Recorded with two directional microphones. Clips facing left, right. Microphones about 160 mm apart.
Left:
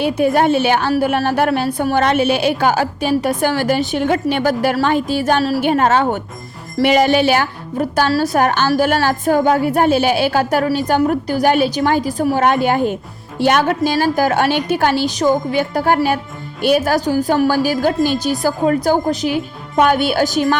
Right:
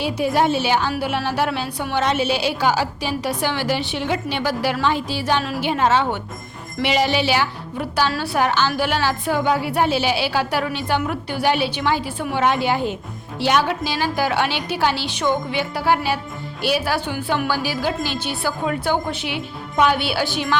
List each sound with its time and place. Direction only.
0.0 s a woman's voice: 55° left (ahead or behind)